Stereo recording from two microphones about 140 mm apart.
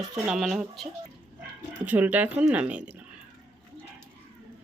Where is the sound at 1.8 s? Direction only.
10° right (ahead or behind).